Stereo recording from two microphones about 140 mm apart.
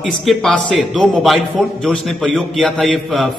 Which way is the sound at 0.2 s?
Centre (ahead or behind).